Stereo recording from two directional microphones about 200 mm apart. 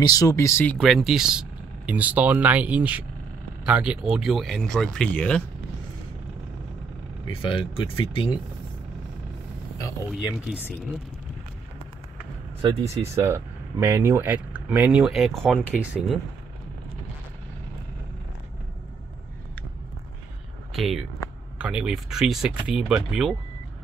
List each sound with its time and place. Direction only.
0.0 s speech: 20° left (ahead or behind)
7.2 s speech: 25° left (ahead or behind)
10.1 s speech: 5° right (ahead or behind)
12.6 s speech: 30° right (ahead or behind)
13.0 s speech: 15° right (ahead or behind)
20.7 s speech: centre (ahead or behind)